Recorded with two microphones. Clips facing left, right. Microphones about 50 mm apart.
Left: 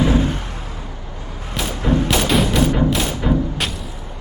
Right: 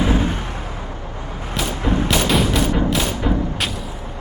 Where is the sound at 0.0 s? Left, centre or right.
Right.